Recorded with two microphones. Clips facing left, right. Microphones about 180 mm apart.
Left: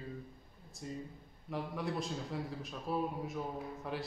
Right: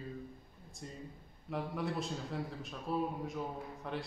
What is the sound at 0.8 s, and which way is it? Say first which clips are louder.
A man's voice: left 4 dB; centre (ahead or behind).